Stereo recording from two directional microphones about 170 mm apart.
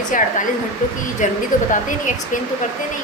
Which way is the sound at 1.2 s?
50° left (ahead or behind).